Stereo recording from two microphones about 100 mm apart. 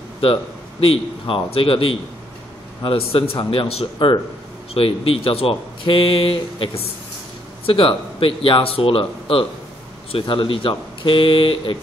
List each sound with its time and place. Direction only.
0.2 s speech: 65° left (ahead or behind)
4.7 s speech: 65° left (ahead or behind)